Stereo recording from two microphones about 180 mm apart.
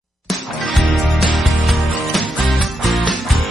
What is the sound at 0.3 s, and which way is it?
Music, centre (ahead or behind).